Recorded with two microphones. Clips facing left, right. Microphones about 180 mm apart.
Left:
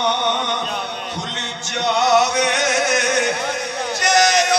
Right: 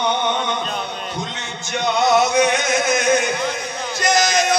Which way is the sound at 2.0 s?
75° left (ahead or behind).